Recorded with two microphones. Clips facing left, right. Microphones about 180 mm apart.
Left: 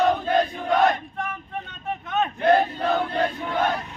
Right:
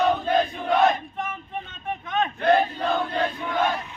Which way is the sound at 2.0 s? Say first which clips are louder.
Left 1 dB; 5° left (ahead or behind).